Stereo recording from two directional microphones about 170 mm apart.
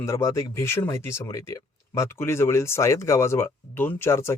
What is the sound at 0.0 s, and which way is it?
Speech, 15° left (ahead or behind).